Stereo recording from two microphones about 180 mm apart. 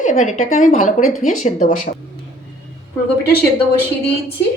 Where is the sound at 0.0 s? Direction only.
40° left (ahead or behind).